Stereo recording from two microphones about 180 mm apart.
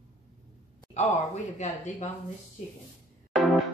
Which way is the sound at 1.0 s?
40° left (ahead or behind).